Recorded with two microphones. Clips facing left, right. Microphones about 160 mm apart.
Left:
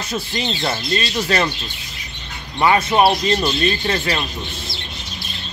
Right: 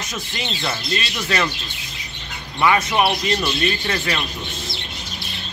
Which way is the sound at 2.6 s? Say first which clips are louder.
Left 3 dB; 30° left (ahead or behind).